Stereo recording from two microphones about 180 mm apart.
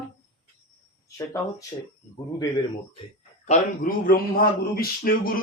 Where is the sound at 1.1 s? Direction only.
15° left (ahead or behind).